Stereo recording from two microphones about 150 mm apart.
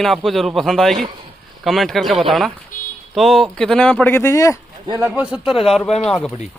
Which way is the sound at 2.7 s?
65° left (ahead or behind).